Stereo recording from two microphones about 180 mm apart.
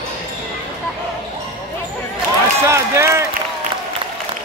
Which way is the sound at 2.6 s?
15° right (ahead or behind).